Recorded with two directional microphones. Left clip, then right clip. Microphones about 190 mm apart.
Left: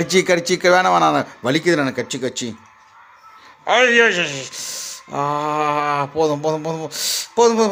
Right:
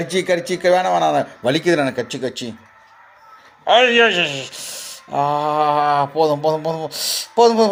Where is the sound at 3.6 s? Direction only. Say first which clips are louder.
Right 1 dB; 15° left (ahead or behind).